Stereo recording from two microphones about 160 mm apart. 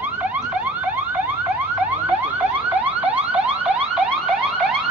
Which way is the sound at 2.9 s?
10° right (ahead or behind).